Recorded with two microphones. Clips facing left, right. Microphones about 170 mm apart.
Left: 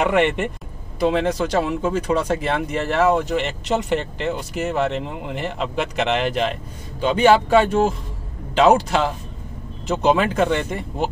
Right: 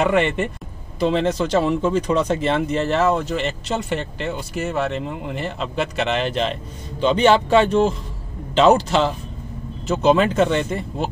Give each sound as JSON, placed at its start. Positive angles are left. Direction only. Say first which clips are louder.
{"t": 0.0, "sound": "speech", "louder": "even", "side_deg": 15}